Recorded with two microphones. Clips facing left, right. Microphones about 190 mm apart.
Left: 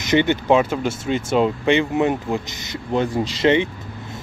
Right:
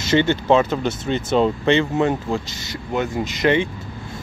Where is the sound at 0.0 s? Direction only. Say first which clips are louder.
Even; 15° left (ahead or behind).